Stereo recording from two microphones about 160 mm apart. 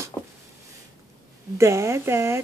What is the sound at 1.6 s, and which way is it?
Speech, 15° right (ahead or behind).